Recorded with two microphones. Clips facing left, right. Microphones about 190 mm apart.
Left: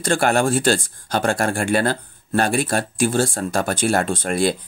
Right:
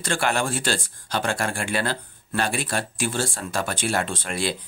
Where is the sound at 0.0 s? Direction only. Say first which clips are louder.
Left 6 dB; 45° left (ahead or behind).